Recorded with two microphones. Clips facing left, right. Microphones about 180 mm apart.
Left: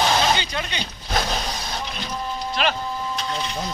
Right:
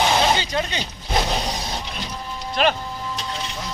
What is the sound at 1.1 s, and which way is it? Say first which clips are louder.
Vehicle: right 2 dB; 20° right (ahead or behind).